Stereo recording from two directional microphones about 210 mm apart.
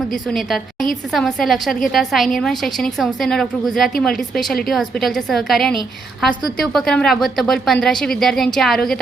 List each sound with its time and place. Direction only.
0.1 s a woman's voice: centre (ahead or behind)